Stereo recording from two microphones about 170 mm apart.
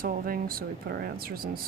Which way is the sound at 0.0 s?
60° right (ahead or behind).